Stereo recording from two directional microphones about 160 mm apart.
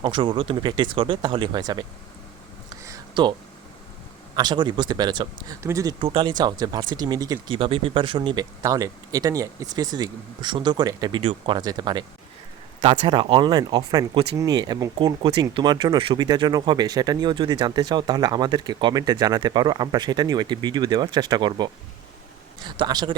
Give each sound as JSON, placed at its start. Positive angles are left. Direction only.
{"t": 0.0, "sound": "speech", "side_deg": -30}
{"t": 2.8, "sound": "a sound", "side_deg": -25}
{"t": 4.4, "sound": "speech", "side_deg": -25}